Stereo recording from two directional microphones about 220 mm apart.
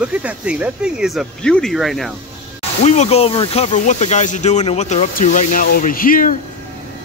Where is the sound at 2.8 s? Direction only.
30° left (ahead or behind).